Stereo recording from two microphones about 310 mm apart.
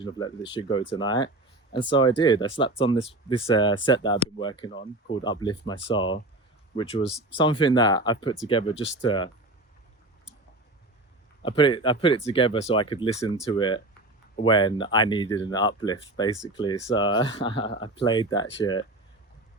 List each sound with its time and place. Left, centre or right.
0.0 s speech: centre
11.4 s speech: centre